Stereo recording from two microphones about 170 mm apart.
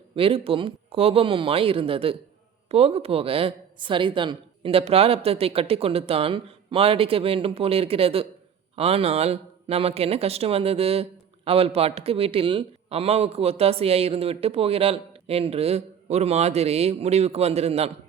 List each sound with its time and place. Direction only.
0.2 s a man's voice: 30° right (ahead or behind)